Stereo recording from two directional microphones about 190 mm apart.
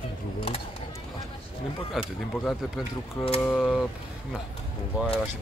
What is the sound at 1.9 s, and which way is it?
Speech, centre (ahead or behind).